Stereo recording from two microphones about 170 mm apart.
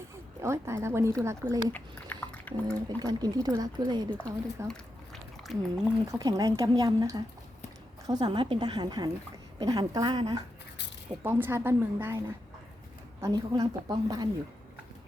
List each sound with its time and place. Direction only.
0.4 s a woman's voice: 15° right (ahead or behind)
1.7 s chewing: 10° left (ahead or behind)
3.0 s speech: 20° right (ahead or behind)
4.2 s speech: 5° left (ahead or behind)
6.1 s speech: 20° right (ahead or behind)
11.2 s a woman's voice: 10° right (ahead or behind)
13.2 s speech: 25° right (ahead or behind)